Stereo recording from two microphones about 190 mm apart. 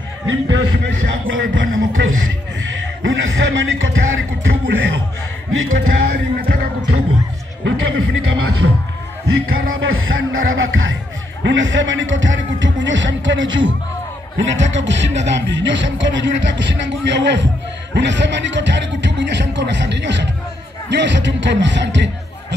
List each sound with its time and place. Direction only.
0.3 s speech: 80° right
1.3 s speech: 90° right
6.0 s music: 50° right (ahead or behind)
7.6 s music: 90° right
9.3 s speech: 90° right; by 22.6 s 70° right (ahead or behind)